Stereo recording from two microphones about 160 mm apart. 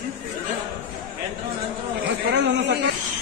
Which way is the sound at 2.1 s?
90° right.